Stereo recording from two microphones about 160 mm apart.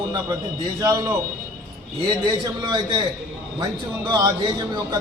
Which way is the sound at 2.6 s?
30° right (ahead or behind).